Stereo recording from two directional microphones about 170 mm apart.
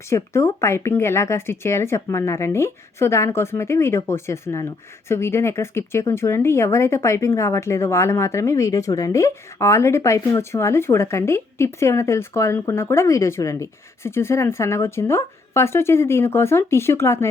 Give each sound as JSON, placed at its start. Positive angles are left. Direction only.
{"t": 0.1, "sound": "speech", "side_deg": 15}